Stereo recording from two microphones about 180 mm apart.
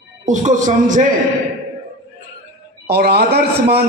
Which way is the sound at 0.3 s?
45° right (ahead or behind).